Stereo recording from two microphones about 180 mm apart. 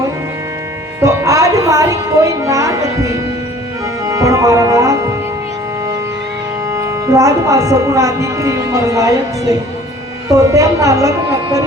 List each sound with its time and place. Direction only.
1.0 s speech: 15° right (ahead or behind)
4.1 s music: 15° right (ahead or behind)
6.7 s speech: 15° right (ahead or behind)